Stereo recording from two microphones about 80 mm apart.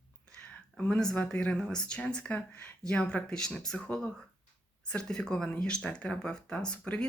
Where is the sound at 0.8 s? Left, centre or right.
Centre.